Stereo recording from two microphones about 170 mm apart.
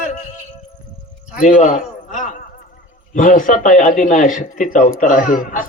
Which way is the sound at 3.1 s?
50° left (ahead or behind).